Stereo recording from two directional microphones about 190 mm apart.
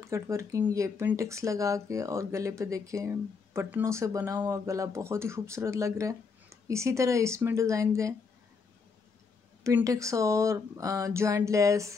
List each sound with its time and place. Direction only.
0.0 s speech: 15° right (ahead or behind)
9.6 s speech: 15° right (ahead or behind)